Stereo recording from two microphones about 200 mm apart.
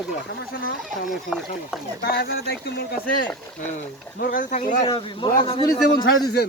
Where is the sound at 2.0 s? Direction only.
50° left (ahead or behind).